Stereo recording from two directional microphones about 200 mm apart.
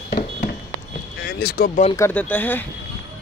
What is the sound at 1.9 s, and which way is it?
Speech, 10° left (ahead or behind).